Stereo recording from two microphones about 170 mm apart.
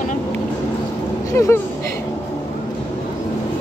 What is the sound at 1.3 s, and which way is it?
Speech, 15° left (ahead or behind).